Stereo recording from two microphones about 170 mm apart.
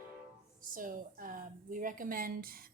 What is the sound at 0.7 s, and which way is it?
A woman's voice, 55° right (ahead or behind).